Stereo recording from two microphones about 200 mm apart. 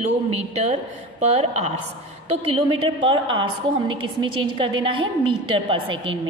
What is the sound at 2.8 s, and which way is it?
Speech, 25° right (ahead or behind).